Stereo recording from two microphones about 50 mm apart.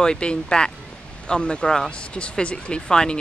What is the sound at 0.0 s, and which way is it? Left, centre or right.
Speech, centre.